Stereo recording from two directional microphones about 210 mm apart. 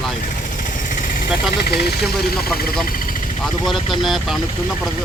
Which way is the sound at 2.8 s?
45° left (ahead or behind).